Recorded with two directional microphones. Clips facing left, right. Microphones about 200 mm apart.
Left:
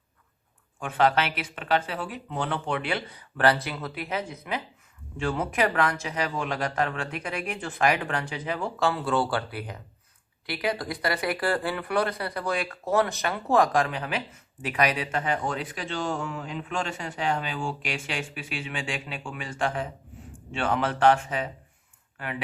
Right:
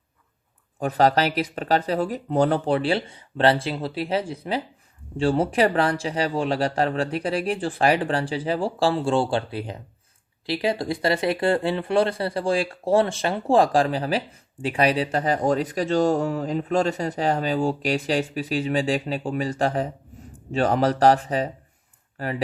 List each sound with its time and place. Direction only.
0.8 s speech: 40° right (ahead or behind)